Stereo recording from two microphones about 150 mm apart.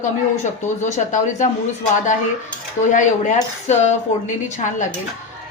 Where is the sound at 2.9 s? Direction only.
55° left (ahead or behind).